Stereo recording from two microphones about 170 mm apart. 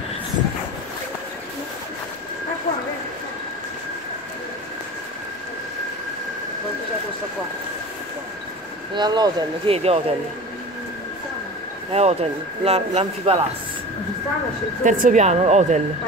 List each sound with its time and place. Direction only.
8.9 s speech: 25° right (ahead or behind)
11.9 s speech: 40° right (ahead or behind)
14.8 s speech: 50° right (ahead or behind)